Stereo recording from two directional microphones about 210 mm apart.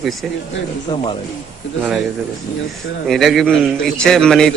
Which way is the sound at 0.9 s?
20° left (ahead or behind).